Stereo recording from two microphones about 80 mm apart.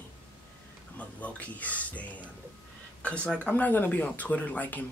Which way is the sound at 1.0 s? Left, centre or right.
Centre.